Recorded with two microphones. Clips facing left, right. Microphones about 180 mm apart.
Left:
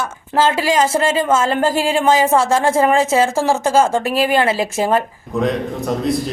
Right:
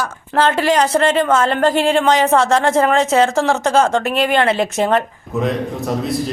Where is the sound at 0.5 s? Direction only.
10° left (ahead or behind).